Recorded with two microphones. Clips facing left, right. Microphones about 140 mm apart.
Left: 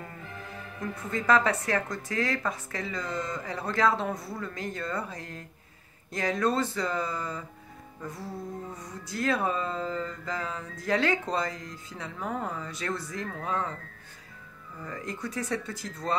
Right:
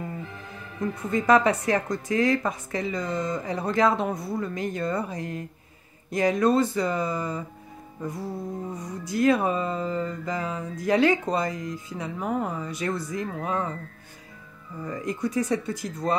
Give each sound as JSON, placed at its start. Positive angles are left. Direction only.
{"t": 0.8, "sound": "mantra", "side_deg": -15}
{"t": 8.7, "sound": "mantra", "side_deg": -15}
{"t": 14.8, "sound": "mantra", "side_deg": -15}